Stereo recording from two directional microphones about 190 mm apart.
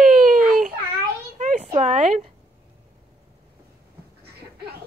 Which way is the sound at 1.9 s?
40° right (ahead or behind).